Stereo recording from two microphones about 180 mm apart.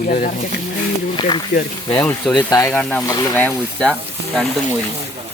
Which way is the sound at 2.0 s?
Centre (ahead or behind).